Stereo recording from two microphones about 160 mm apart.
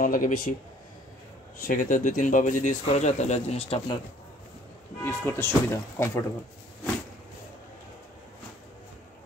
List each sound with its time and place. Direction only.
0.0 s speech: 55° left (ahead or behind)
1.6 s speech: 60° left (ahead or behind); by 4.0 s 35° left (ahead or behind)
5.0 s speech: 15° left (ahead or behind)